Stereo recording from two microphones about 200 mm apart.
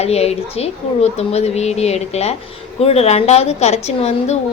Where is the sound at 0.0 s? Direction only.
30° left (ahead or behind).